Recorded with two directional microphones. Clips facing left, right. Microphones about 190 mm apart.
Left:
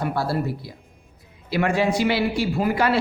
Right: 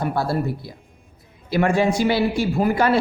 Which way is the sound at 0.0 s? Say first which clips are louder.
Right 2 dB; 50° right (ahead or behind).